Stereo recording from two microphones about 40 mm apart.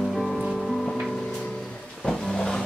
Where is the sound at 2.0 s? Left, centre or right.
Centre.